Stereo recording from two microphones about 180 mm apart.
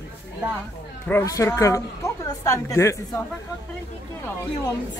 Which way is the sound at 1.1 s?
15° left (ahead or behind).